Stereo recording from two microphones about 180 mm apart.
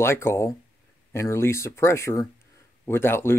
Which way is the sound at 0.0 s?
15° left (ahead or behind).